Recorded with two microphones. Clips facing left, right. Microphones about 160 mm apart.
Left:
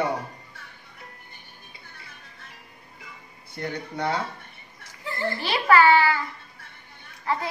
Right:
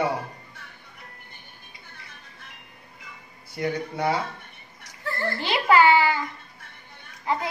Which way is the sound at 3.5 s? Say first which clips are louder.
Right 4 dB; 10° right (ahead or behind).